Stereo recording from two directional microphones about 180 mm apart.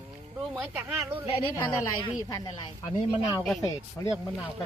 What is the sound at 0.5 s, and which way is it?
Speech, 5° right (ahead or behind).